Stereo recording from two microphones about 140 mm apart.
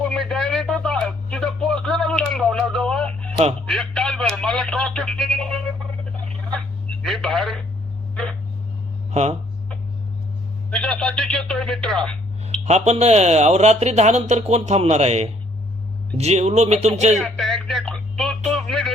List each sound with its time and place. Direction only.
0.0 s a sound: 5° left (ahead or behind)
3.7 s speech: 5° left (ahead or behind)
7.0 s speech: centre (ahead or behind)
8.1 s a sound: 5° left (ahead or behind)
10.7 s radio: 5° left (ahead or behind)
12.6 s speech: 55° right (ahead or behind)
17.2 s speech: centre (ahead or behind)
18.5 s music: centre (ahead or behind)